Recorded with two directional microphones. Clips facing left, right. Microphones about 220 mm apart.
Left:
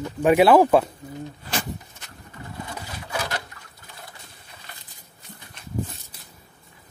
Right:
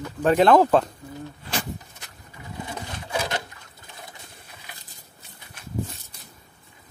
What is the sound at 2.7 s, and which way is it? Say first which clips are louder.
Wood: right 1 dB; 20° right (ahead or behind).